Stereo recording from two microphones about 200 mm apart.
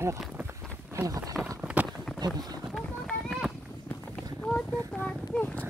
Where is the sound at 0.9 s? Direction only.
15° right (ahead or behind).